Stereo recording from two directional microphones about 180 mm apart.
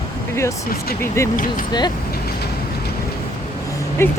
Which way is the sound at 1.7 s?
25° left (ahead or behind).